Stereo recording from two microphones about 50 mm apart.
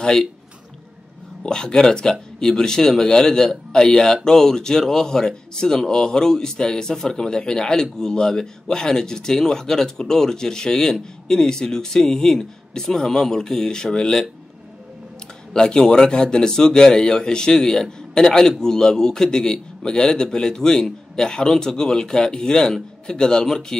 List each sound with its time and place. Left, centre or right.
1.4 s speech: centre
15.5 s speech: centre